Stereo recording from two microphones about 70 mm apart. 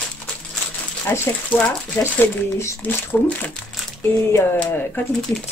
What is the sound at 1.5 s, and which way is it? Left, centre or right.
Speech, left.